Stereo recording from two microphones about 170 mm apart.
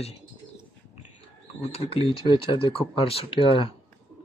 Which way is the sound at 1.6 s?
35° left (ahead or behind).